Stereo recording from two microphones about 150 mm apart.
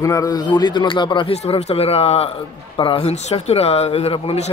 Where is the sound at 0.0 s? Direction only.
20° left (ahead or behind).